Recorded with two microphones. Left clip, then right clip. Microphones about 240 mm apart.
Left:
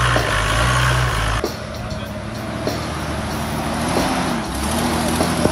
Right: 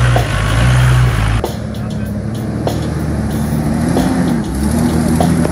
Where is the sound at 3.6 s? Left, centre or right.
Left.